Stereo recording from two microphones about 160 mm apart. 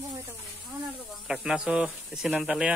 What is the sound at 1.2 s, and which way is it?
Speech, 5° right (ahead or behind).